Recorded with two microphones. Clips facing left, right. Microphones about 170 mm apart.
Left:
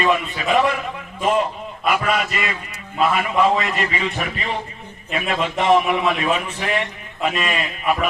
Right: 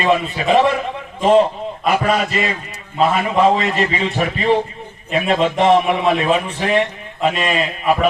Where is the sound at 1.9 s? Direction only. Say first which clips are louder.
Right 3 dB; 35° right (ahead or behind).